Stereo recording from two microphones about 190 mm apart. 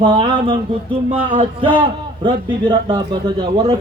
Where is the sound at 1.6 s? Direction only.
25° right (ahead or behind).